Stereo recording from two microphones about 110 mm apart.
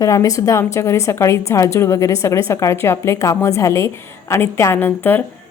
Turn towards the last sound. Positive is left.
turn(degrees=20)  # may be behind; listen again after turning